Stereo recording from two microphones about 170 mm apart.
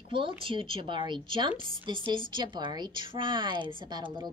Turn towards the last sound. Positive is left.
turn(degrees=-25)  # may be behind; listen again after turning